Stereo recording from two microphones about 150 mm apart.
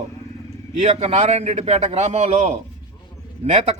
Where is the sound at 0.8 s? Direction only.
45° right (ahead or behind).